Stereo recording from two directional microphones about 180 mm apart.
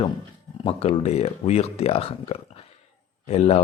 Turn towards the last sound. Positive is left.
turn(degrees=35)  # may be behind; listen again after turning